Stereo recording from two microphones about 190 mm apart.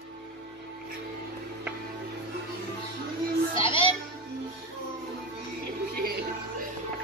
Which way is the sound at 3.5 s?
30° left (ahead or behind).